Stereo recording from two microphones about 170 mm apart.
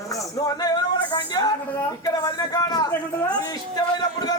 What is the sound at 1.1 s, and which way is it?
Speech, 25° left (ahead or behind).